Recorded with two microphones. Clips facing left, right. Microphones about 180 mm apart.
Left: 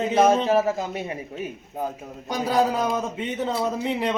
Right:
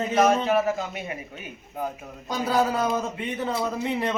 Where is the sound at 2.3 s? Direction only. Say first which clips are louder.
Left 2 dB; 15° left (ahead or behind).